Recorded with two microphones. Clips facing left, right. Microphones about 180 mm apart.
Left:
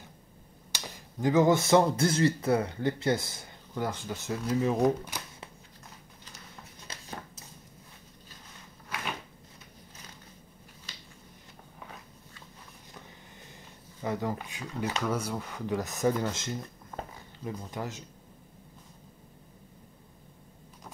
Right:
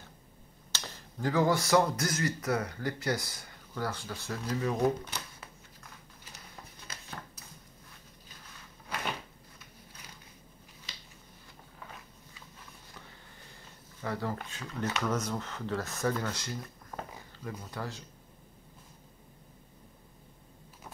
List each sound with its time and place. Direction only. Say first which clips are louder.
0.7 s speech: left 1 dB; 15° left (ahead or behind)
14.0 s speech: left 3 dB; 15° left (ahead or behind)